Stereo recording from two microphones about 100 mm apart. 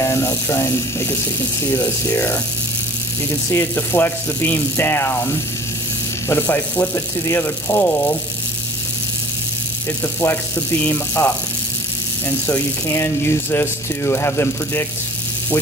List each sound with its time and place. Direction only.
0.0 s speech: 25° left (ahead or behind)
10.2 s speech: 15° left (ahead or behind)
12.8 s speech: 25° left (ahead or behind)